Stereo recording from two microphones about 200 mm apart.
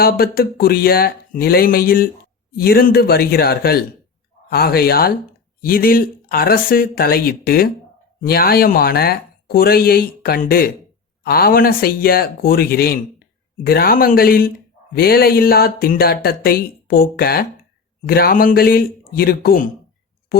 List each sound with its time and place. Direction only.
0.0 s speech: 50° left (ahead or behind)